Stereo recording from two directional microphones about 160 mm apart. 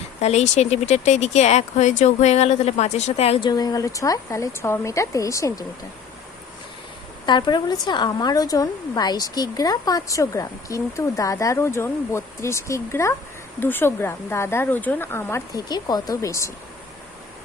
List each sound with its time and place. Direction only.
0.2 s speech: 45° left (ahead or behind)
3.5 s a woman's voice: 25° left (ahead or behind)
7.3 s a woman's voice: 25° left (ahead or behind)